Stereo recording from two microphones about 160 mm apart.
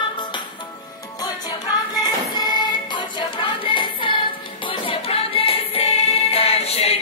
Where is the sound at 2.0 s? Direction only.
25° left (ahead or behind).